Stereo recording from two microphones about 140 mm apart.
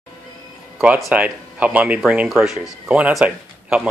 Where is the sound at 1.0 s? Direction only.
10° right (ahead or behind).